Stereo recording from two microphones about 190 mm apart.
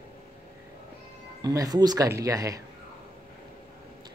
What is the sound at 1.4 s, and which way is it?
Speech, 20° right (ahead or behind).